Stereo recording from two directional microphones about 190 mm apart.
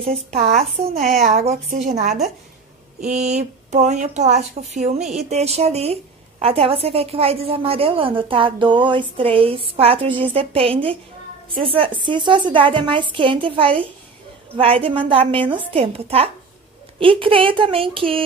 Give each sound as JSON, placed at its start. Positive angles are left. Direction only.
{"t": 0.1, "sound": "a woman's voice", "side_deg": -35}